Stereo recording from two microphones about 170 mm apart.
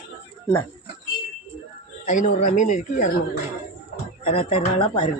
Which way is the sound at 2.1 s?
45° left (ahead or behind).